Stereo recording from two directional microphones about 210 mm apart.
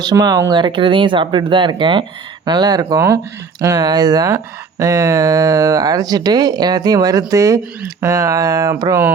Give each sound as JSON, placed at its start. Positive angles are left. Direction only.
{"t": 0.0, "sound": "speech", "side_deg": -20}